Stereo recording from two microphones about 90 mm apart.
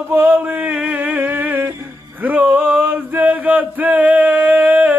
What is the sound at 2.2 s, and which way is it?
Male singing, 20° right (ahead or behind).